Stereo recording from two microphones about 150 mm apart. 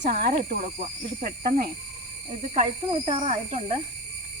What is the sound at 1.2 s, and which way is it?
Speech, 90° right.